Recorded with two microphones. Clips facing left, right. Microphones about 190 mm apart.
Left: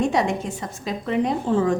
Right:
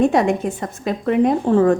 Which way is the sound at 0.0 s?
55° right (ahead or behind).